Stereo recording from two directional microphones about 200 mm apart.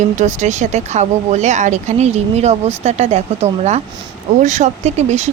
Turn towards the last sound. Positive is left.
turn(degrees=-35)  # may be behind; listen again after turning